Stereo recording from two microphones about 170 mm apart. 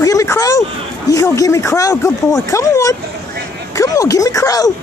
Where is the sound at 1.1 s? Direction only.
20° left (ahead or behind).